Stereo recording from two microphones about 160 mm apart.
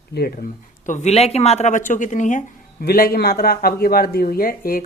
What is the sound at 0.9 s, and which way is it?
Speech, 45° left (ahead or behind).